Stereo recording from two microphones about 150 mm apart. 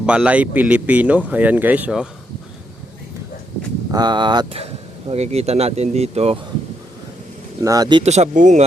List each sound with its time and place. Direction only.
0.0 s speech: 5° right (ahead or behind)
3.9 s speech: 30° right (ahead or behind)
4.6 s speech: 45° right (ahead or behind)
7.6 s speech: 25° right (ahead or behind)
8.0 s speech: 50° right (ahead or behind)